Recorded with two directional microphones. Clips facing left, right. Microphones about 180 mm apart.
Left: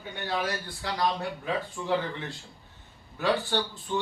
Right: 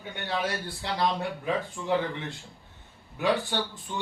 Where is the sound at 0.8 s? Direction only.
25° right (ahead or behind).